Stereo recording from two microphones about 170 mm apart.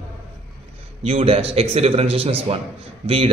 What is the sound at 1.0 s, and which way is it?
A man's voice, 35° right (ahead or behind).